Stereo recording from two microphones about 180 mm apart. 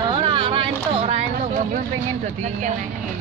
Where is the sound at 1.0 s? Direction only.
40° right (ahead or behind).